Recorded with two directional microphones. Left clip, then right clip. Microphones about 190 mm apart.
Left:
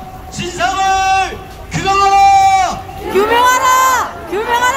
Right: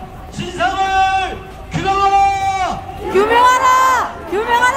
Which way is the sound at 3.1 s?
15° right (ahead or behind).